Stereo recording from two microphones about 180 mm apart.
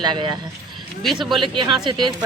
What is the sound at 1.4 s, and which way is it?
Speech, 25° right (ahead or behind).